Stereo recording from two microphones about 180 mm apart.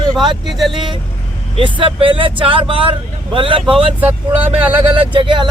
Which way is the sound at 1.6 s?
25° right (ahead or behind).